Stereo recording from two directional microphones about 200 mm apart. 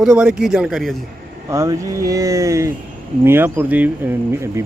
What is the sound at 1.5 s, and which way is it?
Speech, 15° right (ahead or behind).